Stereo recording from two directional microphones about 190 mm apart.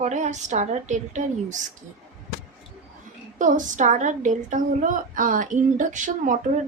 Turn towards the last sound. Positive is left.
turn(degrees=-45)  # may be behind; listen again after turning